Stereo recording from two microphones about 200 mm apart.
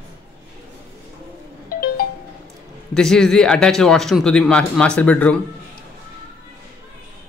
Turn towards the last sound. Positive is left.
turn(degrees=5)  # may be behind; listen again after turning